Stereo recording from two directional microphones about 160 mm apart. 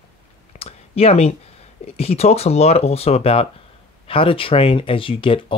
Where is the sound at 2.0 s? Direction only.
40° left (ahead or behind).